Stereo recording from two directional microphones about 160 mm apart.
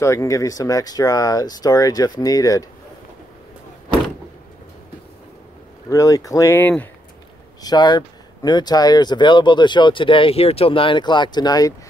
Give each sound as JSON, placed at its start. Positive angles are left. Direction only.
{"t": 0.0, "sound": "speech", "side_deg": 20}
{"t": 5.9, "sound": "speech", "side_deg": 20}
{"t": 7.6, "sound": "speech", "side_deg": 25}